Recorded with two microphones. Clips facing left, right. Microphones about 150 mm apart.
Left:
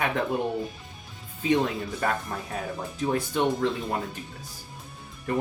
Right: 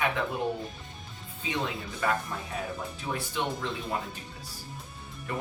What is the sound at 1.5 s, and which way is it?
Speech, 45° left (ahead or behind).